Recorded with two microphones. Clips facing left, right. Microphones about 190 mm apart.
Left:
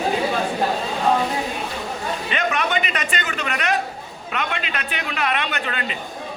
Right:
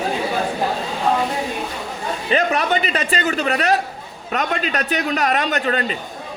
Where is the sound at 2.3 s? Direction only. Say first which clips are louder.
Right 6 dB; 35° right (ahead or behind).